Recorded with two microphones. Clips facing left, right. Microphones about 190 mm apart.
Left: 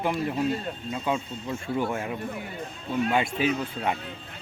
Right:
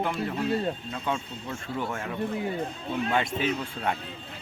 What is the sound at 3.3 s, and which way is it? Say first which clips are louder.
Speech: left 2 dB; 5° left (ahead or behind).